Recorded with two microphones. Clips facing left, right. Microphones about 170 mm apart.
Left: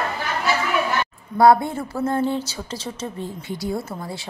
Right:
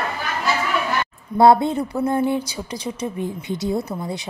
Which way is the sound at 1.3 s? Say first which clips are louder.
Right 1 dB; 25° right (ahead or behind).